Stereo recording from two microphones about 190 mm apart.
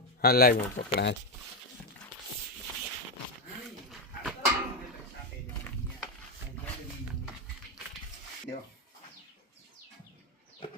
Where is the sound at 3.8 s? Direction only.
Centre (ahead or behind).